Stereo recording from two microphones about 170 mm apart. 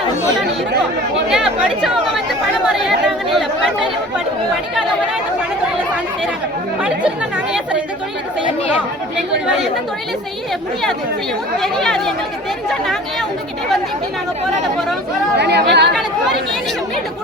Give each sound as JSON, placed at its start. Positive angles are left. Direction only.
{"t": 1.3, "sound": "speech", "side_deg": -5}
{"t": 6.8, "sound": "speech", "side_deg": -5}
{"t": 11.6, "sound": "speech", "side_deg": 5}
{"t": 15.4, "sound": "speech", "side_deg": -80}